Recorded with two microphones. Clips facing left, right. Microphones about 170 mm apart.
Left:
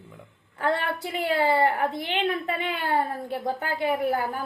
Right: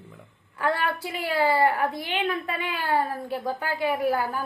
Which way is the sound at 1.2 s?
20° left (ahead or behind).